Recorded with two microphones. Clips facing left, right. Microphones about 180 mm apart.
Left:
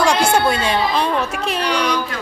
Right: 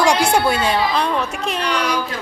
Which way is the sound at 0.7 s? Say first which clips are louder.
Even; centre (ahead or behind).